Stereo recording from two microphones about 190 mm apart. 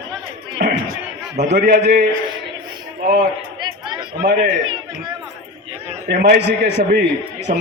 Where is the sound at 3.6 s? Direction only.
25° right (ahead or behind).